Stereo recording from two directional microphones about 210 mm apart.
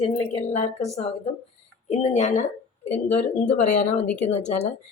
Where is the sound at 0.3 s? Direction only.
30° left (ahead or behind).